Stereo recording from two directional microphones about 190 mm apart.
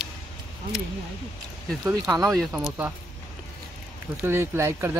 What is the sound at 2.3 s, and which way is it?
Speech, 5° right (ahead or behind).